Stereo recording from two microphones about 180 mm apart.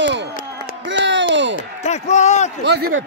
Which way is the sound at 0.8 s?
80° right.